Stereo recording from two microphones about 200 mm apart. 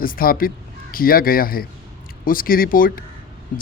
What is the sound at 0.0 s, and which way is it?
Speech, 45° left (ahead or behind).